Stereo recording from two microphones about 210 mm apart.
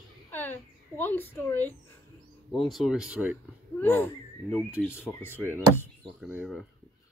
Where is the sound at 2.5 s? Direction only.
Centre (ahead or behind).